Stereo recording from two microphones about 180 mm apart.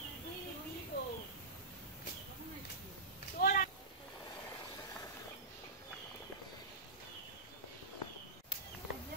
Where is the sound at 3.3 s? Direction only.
50° left (ahead or behind).